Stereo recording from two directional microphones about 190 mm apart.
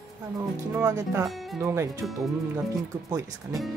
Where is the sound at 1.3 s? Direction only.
Centre (ahead or behind).